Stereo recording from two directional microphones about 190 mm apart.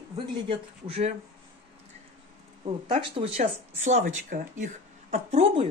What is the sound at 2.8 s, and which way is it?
Speech, 25° right (ahead or behind).